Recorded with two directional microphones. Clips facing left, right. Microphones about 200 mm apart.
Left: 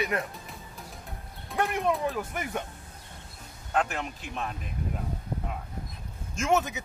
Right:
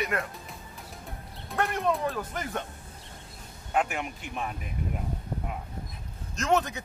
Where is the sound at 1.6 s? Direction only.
15° left (ahead or behind).